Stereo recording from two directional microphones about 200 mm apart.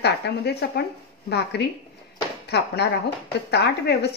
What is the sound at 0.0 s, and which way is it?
A woman's voice, 55° left (ahead or behind).